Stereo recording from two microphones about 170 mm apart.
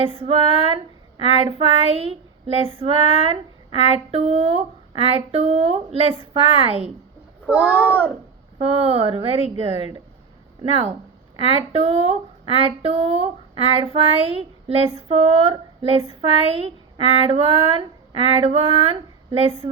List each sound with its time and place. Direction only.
0.0 s speech: 35° right (ahead or behind)
7.4 s a child's voice: 10° right (ahead or behind)
8.5 s speech: 35° right (ahead or behind)
10.6 s speech: 35° right (ahead or behind)